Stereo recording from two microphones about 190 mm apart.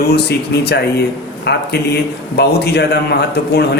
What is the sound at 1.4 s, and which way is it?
Speech, 60° left (ahead or behind).